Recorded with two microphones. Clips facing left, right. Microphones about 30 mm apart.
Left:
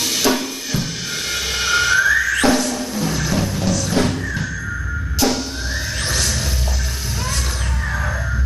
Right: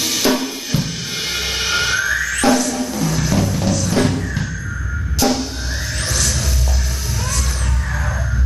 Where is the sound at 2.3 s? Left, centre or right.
Centre.